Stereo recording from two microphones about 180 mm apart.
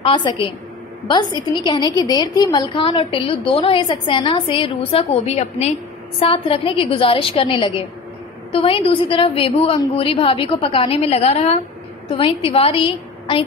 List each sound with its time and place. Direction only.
0.0 s a woman's voice: 25° left (ahead or behind)